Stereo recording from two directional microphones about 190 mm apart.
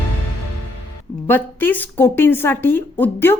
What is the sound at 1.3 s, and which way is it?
A woman's voice, 10° left (ahead or behind).